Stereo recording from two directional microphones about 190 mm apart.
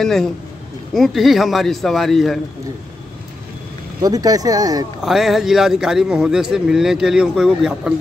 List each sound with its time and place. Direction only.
0.0 s a man's voice: centre (ahead or behind)
4.0 s speech: 20° right (ahead or behind)
5.0 s a man's voice: centre (ahead or behind)